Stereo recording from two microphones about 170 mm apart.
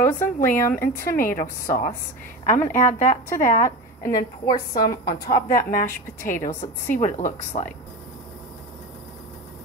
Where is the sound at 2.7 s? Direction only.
45° left (ahead or behind).